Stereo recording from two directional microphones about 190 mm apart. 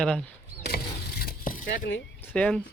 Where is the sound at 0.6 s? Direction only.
55° left (ahead or behind).